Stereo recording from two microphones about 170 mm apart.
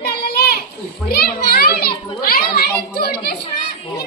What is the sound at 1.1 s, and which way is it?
A child's voice, 65° left (ahead or behind).